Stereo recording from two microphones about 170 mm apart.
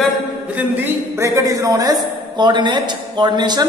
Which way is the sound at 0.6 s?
15° right (ahead or behind).